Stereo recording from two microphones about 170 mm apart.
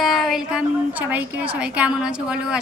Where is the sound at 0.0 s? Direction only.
Centre (ahead or behind).